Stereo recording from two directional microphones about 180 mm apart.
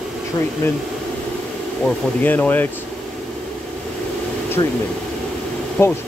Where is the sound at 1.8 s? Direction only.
10° left (ahead or behind).